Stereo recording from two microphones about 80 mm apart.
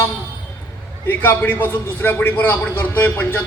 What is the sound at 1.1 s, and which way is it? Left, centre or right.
A man's voice, left.